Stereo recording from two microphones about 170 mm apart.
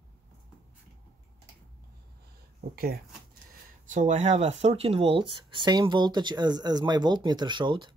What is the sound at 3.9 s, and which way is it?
Speech, 45° right (ahead or behind).